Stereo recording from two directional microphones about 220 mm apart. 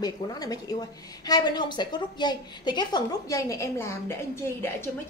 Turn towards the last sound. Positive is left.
turn(degrees=10)  # may be behind; listen again after turning